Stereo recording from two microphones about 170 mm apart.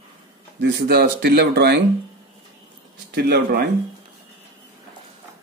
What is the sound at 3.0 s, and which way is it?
Speech, 70° right (ahead or behind).